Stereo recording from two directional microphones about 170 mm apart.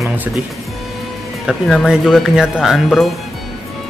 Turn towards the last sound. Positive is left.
turn(degrees=0)  # may be behind; listen again after turning